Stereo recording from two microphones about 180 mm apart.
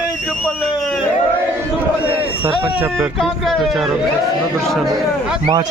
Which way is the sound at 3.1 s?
Centre (ahead or behind).